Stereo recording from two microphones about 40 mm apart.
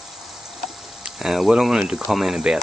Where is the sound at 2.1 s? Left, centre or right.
Centre.